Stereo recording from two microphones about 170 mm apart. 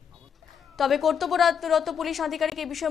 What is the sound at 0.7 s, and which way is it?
Speech, centre (ahead or behind).